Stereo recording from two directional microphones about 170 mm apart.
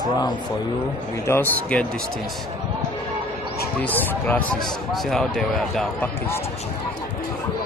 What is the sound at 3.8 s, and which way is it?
Speech, 10° left (ahead or behind).